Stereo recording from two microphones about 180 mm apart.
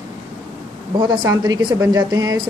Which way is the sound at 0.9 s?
25° right (ahead or behind).